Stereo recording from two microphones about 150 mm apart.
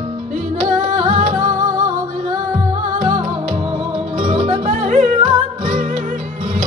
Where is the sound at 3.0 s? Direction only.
50° right (ahead or behind).